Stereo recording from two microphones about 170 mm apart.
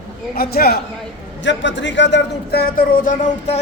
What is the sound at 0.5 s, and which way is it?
Speech, 65° left (ahead or behind).